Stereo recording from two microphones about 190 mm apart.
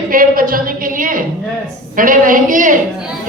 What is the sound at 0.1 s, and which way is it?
A woman's voice, 50° right (ahead or behind).